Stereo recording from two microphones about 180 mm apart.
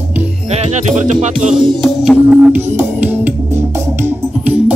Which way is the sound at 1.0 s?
40° right (ahead or behind).